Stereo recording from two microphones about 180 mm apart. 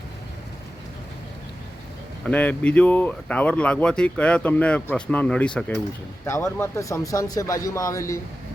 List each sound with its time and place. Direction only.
2.2 s speech: 10° left (ahead or behind)